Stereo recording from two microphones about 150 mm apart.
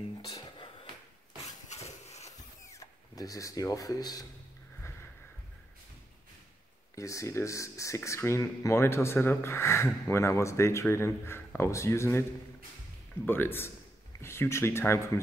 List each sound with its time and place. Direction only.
0.3 s music: 30° left (ahead or behind)
1.7 s a sound: 45° left (ahead or behind)
2.3 s tools: 25° left (ahead or behind)
7.0 s speech: 20° left (ahead or behind)